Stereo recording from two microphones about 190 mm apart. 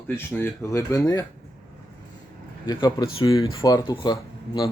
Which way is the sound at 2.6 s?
25° left (ahead or behind).